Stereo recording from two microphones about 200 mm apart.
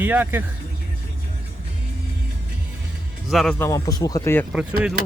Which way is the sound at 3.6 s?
15° left (ahead or behind).